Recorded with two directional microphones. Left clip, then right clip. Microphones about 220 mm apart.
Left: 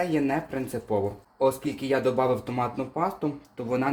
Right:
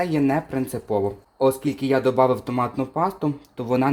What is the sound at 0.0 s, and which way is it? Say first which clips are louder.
Speech: right 4 dB; 40° right (ahead or behind).